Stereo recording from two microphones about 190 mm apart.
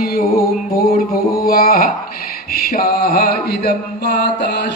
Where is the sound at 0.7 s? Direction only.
50° left (ahead or behind).